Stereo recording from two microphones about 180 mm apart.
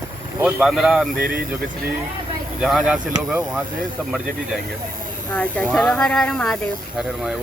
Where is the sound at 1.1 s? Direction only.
50° right (ahead or behind).